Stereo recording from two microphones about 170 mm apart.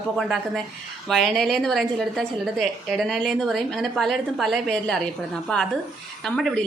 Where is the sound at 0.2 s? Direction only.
Centre (ahead or behind).